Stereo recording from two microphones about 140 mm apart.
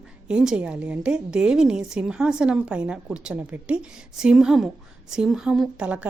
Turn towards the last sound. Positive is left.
turn(degrees=-10)  # may be behind; listen again after turning